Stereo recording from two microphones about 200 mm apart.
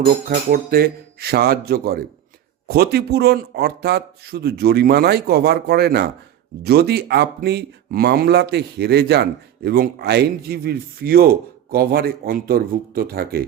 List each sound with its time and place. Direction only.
0.0 s speech: 50° right (ahead or behind)